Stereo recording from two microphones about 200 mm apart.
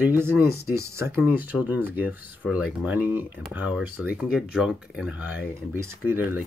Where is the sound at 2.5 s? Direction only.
10° right (ahead or behind).